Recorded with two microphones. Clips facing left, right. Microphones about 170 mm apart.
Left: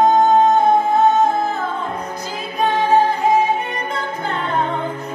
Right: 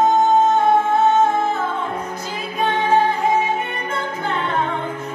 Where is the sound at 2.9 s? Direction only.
40° left (ahead or behind).